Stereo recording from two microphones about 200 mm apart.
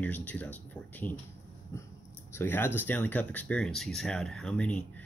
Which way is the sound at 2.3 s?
10° left (ahead or behind).